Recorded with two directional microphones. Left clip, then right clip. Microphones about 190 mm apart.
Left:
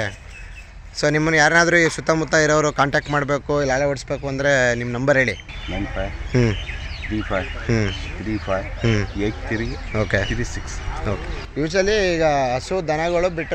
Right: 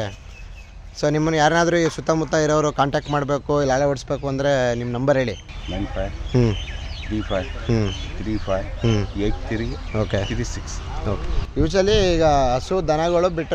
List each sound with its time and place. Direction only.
0.9 s speech: 5° right (ahead or behind); by 4.5 s 20° right (ahead or behind)
4.5 s speech: 10° right (ahead or behind)
11.5 s speech: 25° right (ahead or behind)